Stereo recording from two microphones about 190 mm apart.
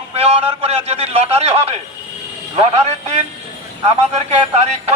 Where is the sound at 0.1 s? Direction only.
30° right (ahead or behind).